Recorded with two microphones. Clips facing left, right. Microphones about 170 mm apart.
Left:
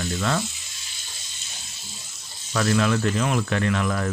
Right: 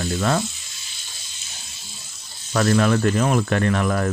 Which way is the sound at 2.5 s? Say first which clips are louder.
Right 3 dB; 45° right (ahead or behind).